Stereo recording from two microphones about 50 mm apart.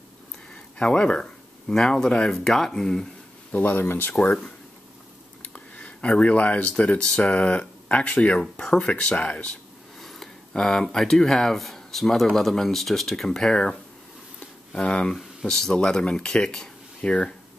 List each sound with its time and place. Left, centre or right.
0.7 s speech: centre
3.5 s speech: left
5.4 s speech: left
8.4 s speech: centre
8.7 s speech: left
9.9 s a sound: centre
10.5 s speech: centre
14.8 s speech: centre
15.1 s speech: centre